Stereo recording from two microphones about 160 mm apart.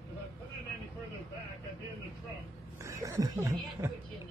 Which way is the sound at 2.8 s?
20° right (ahead or behind).